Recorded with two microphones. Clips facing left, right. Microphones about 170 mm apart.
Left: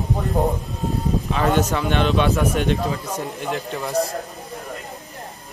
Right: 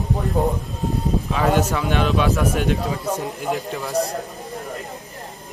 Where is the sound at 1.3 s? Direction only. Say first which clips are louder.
Even; centre (ahead or behind).